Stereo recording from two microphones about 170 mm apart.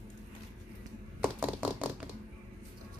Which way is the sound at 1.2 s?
10° right (ahead or behind).